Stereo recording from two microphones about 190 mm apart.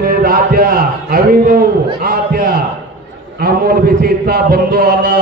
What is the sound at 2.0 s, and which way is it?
A man's voice, 55° right (ahead or behind).